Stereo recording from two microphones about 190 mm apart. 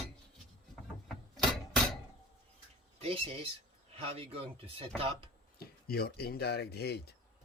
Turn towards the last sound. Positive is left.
turn(degrees=60)  # may be behind; listen again after turning